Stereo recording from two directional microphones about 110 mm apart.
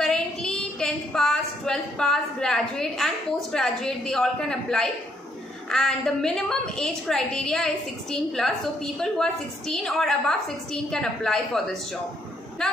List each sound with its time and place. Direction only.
0.0 s a woman's voice: 5° left (ahead or behind)